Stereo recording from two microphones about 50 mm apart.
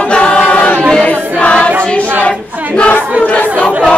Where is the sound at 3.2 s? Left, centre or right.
Left.